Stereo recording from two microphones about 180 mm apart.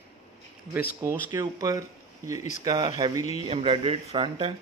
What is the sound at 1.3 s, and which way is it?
Speech, 20° right (ahead or behind).